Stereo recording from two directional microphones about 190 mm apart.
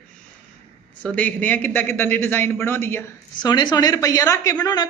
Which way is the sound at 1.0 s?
5° left (ahead or behind).